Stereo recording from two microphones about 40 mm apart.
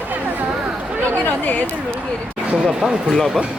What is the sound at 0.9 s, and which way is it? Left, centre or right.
Speech, right.